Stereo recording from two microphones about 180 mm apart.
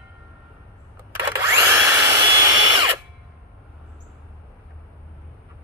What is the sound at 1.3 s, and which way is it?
Drill, 15° right (ahead or behind).